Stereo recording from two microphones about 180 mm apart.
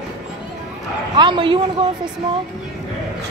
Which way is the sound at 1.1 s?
25° right (ahead or behind).